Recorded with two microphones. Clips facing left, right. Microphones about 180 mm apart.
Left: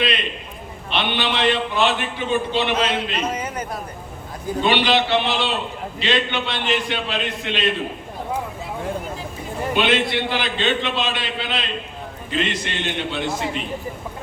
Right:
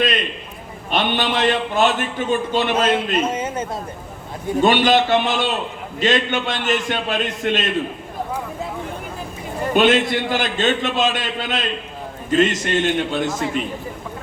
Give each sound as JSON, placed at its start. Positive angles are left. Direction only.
{"t": 0.9, "sound": "a man's voice", "side_deg": -45}
{"t": 3.2, "sound": "a man's voice", "side_deg": -25}
{"t": 4.6, "sound": "a man's voice", "side_deg": -45}
{"t": 9.7, "sound": "a man's voice", "side_deg": -45}